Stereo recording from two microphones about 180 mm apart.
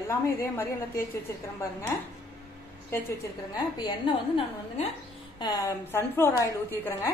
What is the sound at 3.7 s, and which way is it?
Speech, 25° left (ahead or behind).